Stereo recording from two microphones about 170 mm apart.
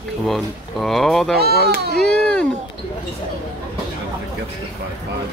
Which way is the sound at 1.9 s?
5° left (ahead or behind).